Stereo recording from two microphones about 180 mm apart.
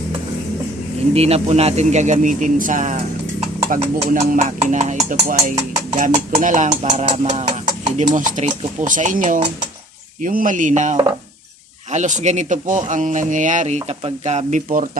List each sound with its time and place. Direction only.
1.1 s speech: 35° right (ahead or behind)